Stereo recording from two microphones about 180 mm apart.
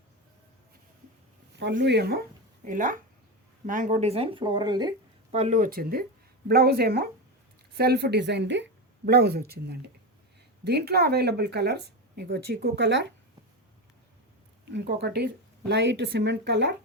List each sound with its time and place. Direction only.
1.5 s speech: 70° right (ahead or behind)
2.6 s speech: 50° right (ahead or behind); by 4.9 s 25° right (ahead or behind)
5.3 s speech: 40° right (ahead or behind); by 13.1 s 75° right (ahead or behind)
14.6 s speech: 70° right (ahead or behind)